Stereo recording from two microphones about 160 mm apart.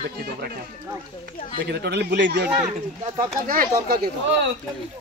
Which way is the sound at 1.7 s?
90° right.